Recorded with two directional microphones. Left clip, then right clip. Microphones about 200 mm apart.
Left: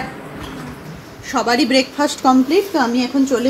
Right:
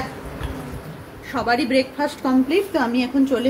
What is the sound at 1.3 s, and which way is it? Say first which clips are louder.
Speech: left 4 dB; 35° left (ahead or behind).